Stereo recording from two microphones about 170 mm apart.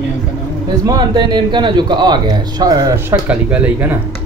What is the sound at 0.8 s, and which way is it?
A man's voice, 25° right (ahead or behind).